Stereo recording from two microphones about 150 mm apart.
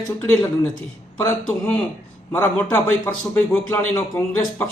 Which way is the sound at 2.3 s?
15° left (ahead or behind).